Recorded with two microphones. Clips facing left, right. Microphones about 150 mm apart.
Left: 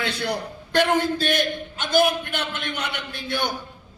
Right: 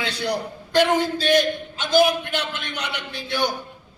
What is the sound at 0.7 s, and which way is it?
A man's voice, 55° left (ahead or behind).